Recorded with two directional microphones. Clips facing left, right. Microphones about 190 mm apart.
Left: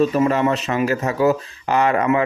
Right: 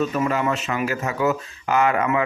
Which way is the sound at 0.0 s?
35° left (ahead or behind).